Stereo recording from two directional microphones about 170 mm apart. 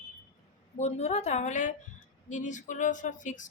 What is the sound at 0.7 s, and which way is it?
A woman's voice, 40° left (ahead or behind).